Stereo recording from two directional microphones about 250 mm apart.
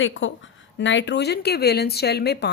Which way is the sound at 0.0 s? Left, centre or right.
Left.